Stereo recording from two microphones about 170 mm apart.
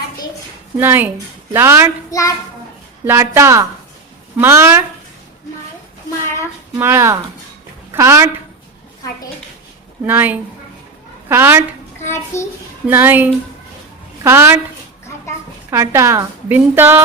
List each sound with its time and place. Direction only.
0.8 s a woman's voice: 10° right (ahead or behind)
2.0 s a child's voice: 20° left (ahead or behind)
3.1 s a woman's voice: 15° right (ahead or behind)
6.7 s a woman's voice: 15° right (ahead or behind)
10.1 s a woman's voice: 10° right (ahead or behind)
12.0 s a child's voice: 15° left (ahead or behind)
12.9 s a woman's voice: 10° right (ahead or behind)
15.7 s a woman's voice: 15° right (ahead or behind)